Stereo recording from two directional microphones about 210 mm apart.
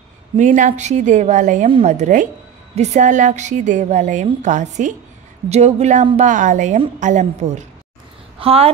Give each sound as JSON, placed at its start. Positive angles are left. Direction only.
{"t": 0.4, "sound": "a woman's voice", "side_deg": -35}